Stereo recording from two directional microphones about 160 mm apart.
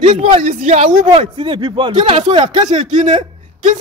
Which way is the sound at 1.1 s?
35° right (ahead or behind).